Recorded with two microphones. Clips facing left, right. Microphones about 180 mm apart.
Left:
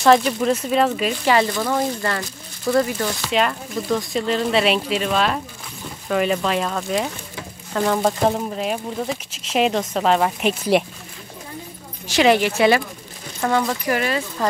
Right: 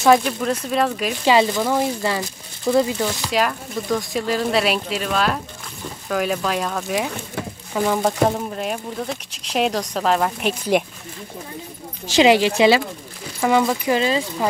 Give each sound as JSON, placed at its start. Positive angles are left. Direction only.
{"t": 0.0, "sound": "speech", "side_deg": 0}
{"t": 1.2, "sound": "speech", "side_deg": -15}
{"t": 3.3, "sound": "speech", "side_deg": 0}
{"t": 12.2, "sound": "speech", "side_deg": -15}